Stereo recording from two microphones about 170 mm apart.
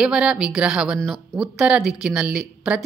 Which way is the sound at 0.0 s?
5° right (ahead or behind).